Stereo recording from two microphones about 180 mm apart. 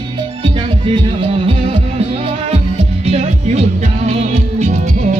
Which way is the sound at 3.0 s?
35° right (ahead or behind).